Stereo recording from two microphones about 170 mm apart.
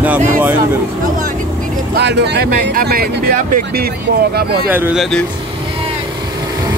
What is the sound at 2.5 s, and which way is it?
Speech, 60° right (ahead or behind).